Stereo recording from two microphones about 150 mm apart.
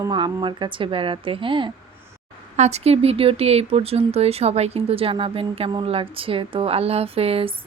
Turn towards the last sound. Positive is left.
turn(degrees=-40)  # may be behind; listen again after turning